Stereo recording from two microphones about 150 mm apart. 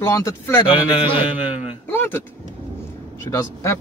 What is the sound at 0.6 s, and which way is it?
Speech, 30° left (ahead or behind).